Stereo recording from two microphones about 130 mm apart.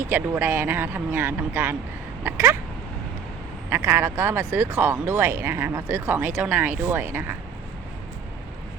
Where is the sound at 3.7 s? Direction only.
15° right (ahead or behind).